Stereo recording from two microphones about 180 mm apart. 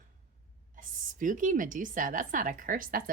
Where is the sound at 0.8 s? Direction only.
45° right (ahead or behind).